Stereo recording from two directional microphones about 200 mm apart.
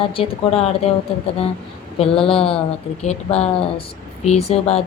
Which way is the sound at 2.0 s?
30° left (ahead or behind).